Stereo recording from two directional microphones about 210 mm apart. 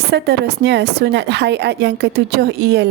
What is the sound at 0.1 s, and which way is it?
A woman's voice, 50° right (ahead or behind).